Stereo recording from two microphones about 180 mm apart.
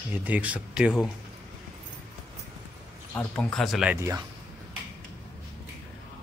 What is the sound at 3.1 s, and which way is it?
Speech, 5° left (ahead or behind).